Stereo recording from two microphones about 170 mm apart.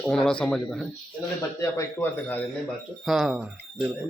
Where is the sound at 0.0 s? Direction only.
5° left (ahead or behind).